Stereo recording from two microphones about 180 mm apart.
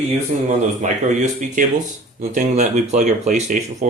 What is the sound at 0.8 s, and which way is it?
Speech, 45° right (ahead or behind).